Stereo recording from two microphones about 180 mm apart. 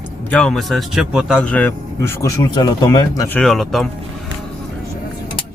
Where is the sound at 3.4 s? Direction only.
Centre (ahead or behind).